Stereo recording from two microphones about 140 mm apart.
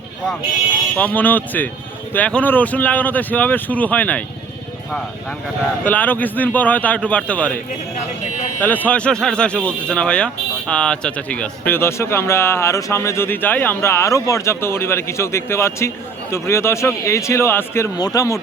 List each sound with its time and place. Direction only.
0.9 s speech: 10° left (ahead or behind)
5.8 s speech: 10° left (ahead or behind)
8.6 s speech: 10° left (ahead or behind)